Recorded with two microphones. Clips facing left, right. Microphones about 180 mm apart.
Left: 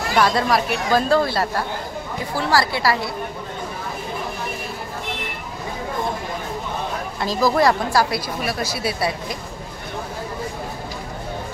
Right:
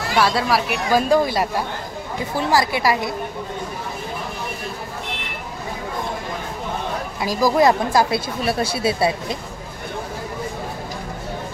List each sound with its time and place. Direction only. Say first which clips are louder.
0.1 s speech: left 1 dB; 5° right (ahead or behind)
7.2 s speech: right 1 dB; 10° right (ahead or behind)